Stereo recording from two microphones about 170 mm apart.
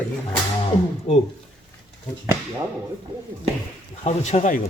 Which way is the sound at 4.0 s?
40° left (ahead or behind).